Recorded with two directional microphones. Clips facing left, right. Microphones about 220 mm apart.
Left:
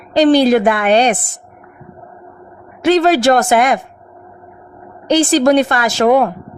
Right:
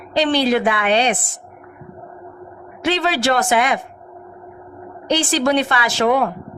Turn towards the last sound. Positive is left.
turn(degrees=45)  # may be behind; listen again after turning